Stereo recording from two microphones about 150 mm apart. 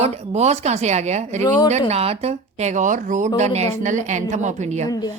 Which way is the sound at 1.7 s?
45° right (ahead or behind).